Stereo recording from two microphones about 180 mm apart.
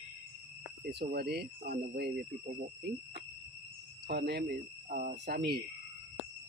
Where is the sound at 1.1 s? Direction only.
65° right (ahead or behind).